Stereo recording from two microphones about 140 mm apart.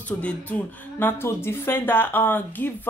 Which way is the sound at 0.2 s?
10° left (ahead or behind).